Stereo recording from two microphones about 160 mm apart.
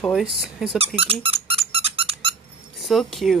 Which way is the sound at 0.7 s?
40° right (ahead or behind).